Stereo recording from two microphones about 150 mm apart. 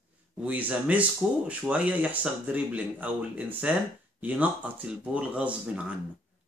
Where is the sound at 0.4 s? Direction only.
10° right (ahead or behind).